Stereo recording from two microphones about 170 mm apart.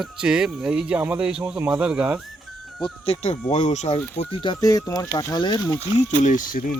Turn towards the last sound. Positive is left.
turn(degrees=50)  # may be behind; listen again after turning